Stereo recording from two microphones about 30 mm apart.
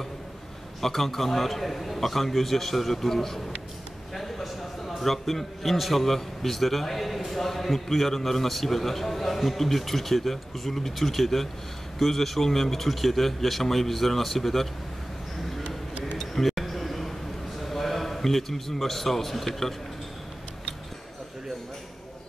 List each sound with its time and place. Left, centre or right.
0.7 s a man's voice: centre
16.2 s a sound: centre
17.6 s a man's voice: centre